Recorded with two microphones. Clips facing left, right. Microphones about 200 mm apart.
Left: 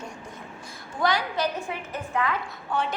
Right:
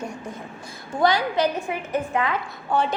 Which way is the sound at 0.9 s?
25° right (ahead or behind).